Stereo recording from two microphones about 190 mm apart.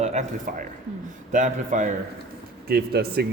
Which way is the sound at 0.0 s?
40° right (ahead or behind).